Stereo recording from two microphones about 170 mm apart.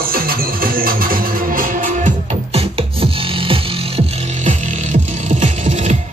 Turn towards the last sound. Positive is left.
turn(degrees=-45)  # may be behind; listen again after turning